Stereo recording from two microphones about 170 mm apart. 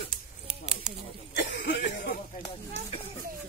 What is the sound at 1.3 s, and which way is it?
Speech, 60° left (ahead or behind).